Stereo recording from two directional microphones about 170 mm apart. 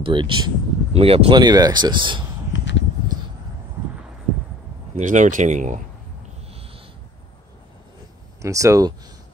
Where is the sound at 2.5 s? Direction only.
90° left.